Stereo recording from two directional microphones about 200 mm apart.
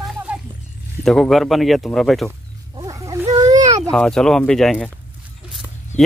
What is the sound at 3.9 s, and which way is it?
Speech, 5° left (ahead or behind).